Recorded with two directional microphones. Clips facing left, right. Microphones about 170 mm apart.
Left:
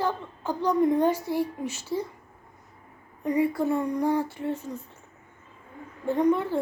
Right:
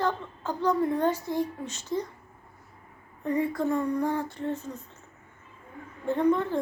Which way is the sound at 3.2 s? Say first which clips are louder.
Left 3 dB; 10° left (ahead or behind).